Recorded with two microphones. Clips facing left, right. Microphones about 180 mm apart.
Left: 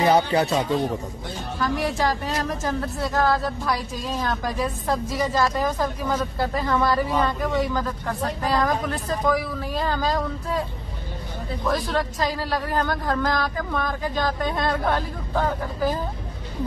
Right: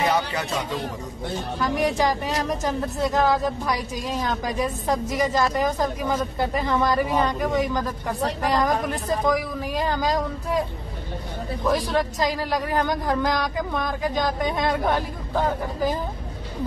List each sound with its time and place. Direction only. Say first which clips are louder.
0.1 s speech: left 5 dB; 30° left (ahead or behind)
1.6 s speech: right 1 dB; 15° right (ahead or behind)
11.6 s speech: right 2 dB; 15° right (ahead or behind)